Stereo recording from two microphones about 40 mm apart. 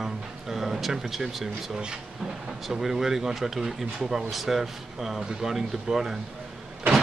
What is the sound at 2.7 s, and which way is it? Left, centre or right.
Speech, centre.